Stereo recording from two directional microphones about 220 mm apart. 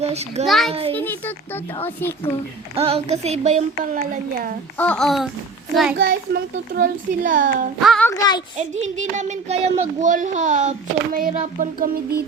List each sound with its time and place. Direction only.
0.0 s a woman's voice: 30° right (ahead or behind)
0.4 s speech: centre (ahead or behind)
0.7 s a woman's voice: 25° right (ahead or behind)
1.8 s speech: 10° left (ahead or behind)
2.7 s a woman's voice: 25° right (ahead or behind)
4.8 s speech: 5° left (ahead or behind)
6.0 s a child's voice: 45° right (ahead or behind)
7.8 s speech: centre (ahead or behind)
8.5 s speech: 30° right (ahead or behind)